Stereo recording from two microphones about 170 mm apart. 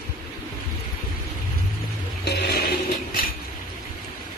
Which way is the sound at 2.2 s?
75° left (ahead or behind).